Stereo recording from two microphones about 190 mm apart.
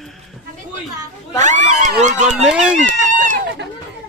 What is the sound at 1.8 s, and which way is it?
Run, 40° right (ahead or behind).